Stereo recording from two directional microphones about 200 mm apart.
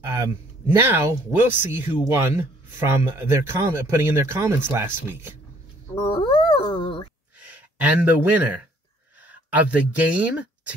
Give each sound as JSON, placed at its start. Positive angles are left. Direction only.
{"t": 0.1, "sound": "a man's voice", "side_deg": -15}
{"t": 5.9, "sound": "speech", "side_deg": 30}
{"t": 7.3, "sound": "a sound", "side_deg": -10}
{"t": 9.3, "sound": "speech", "side_deg": -5}